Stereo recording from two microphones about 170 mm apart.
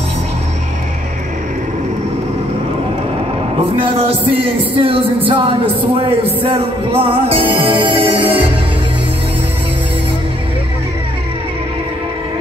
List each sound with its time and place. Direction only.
3.7 s music: 30° right (ahead or behind)
6.4 s music: 35° right (ahead or behind)